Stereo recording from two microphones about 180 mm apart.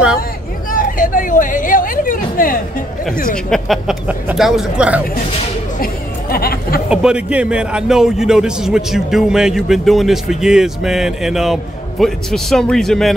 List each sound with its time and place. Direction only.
0.7 s chatter: 50° left (ahead or behind)
3.4 s a man's voice: centre (ahead or behind)
6.3 s speech: 55° left (ahead or behind)
6.9 s a man's voice: 5° right (ahead or behind)